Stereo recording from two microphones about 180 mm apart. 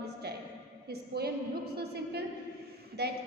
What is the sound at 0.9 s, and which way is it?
A woman's voice, 60° right (ahead or behind).